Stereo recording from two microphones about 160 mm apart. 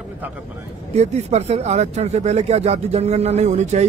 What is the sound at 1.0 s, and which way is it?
Speech, 40° right (ahead or behind).